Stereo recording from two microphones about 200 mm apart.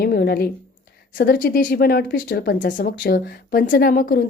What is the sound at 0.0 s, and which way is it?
A woman's voice, 50° left (ahead or behind).